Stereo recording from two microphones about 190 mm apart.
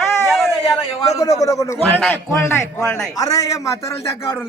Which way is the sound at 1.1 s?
15° left (ahead or behind).